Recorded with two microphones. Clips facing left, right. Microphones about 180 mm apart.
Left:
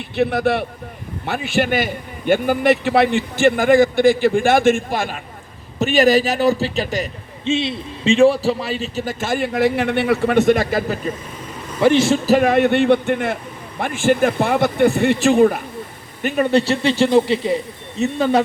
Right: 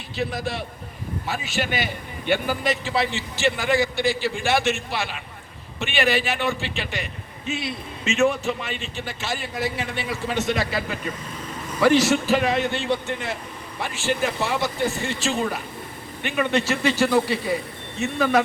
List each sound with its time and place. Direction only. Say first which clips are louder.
0.2 s a man's voice: left 10 dB; 60° left (ahead or behind); by 7.1 s 40° left (ahead or behind)
7.4 s a man's voice: left 9 dB; 25° left (ahead or behind)
11.8 s speech: left 3 dB; 25° left (ahead or behind)
12.2 s speech: left 7 dB; 45° left (ahead or behind)
16.2 s speech: left 6 dB; 40° left (ahead or behind)